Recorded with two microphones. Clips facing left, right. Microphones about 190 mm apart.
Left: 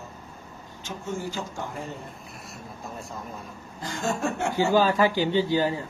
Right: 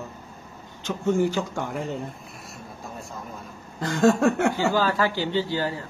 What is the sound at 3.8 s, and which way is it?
Speech, 70° right (ahead or behind).